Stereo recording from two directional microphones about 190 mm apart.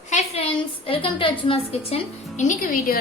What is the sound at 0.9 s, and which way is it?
A woman's voice, 30° left (ahead or behind).